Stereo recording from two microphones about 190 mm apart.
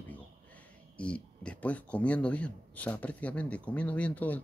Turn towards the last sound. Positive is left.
turn(degrees=10)  # may be behind; listen again after turning